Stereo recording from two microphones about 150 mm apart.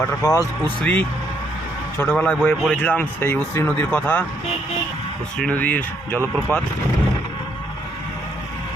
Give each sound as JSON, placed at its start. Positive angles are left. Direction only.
{"t": 0.2, "sound": "speech", "side_deg": 25}
{"t": 0.8, "sound": "speech", "side_deg": 10}
{"t": 5.4, "sound": "speech", "side_deg": 10}